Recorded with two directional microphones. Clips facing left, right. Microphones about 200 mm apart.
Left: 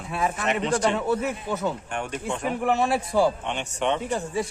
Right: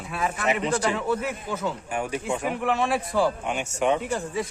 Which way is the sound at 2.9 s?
25° left (ahead or behind).